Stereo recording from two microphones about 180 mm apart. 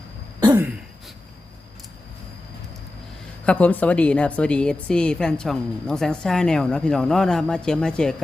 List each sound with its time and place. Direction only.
0.3 s throat clearing: 25° right (ahead or behind)
3.4 s a woman's voice: 10° left (ahead or behind)